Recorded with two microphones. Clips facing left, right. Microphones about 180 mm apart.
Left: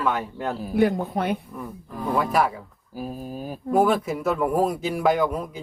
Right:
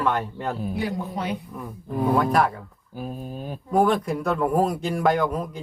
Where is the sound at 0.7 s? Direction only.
55° left (ahead or behind).